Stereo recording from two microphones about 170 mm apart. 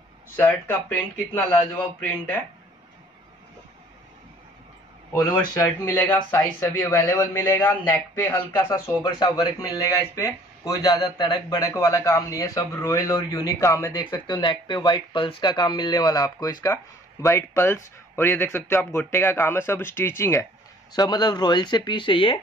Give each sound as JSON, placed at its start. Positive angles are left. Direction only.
{"t": 0.4, "sound": "speech", "side_deg": 10}
{"t": 5.5, "sound": "speech", "side_deg": 20}